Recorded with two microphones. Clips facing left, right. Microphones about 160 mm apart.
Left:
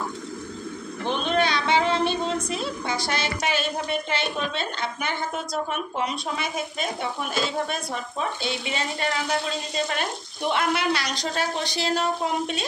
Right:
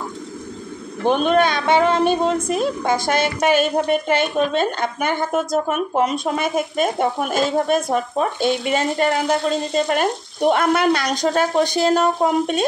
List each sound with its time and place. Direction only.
1.0 s a woman's voice: 50° right (ahead or behind)